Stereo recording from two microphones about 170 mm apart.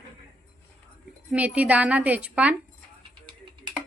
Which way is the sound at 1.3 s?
10° right (ahead or behind).